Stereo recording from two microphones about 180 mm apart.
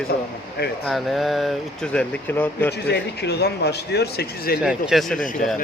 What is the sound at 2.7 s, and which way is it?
Speech, 70° left (ahead or behind).